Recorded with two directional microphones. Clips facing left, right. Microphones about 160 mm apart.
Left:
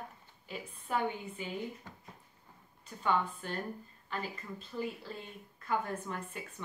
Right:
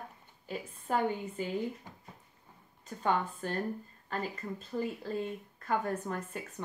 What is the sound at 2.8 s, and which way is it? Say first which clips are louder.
A woman's voice: right 1 dB; 40° right (ahead or behind).